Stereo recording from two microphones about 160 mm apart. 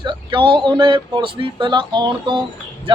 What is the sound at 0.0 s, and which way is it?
Speech, 30° right (ahead or behind).